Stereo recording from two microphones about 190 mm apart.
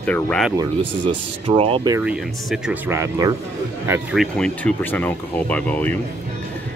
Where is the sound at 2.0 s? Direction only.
5° right (ahead or behind).